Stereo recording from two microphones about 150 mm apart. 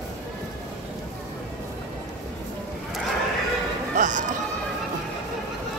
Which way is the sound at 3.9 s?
55° right (ahead or behind).